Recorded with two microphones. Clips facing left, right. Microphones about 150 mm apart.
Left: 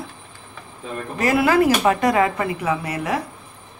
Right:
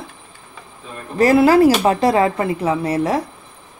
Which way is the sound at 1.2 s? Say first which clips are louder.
Right 6 dB; 35° right (ahead or behind).